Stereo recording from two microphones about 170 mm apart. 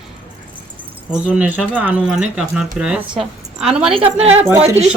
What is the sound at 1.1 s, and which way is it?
A woman's voice, 10° right (ahead or behind).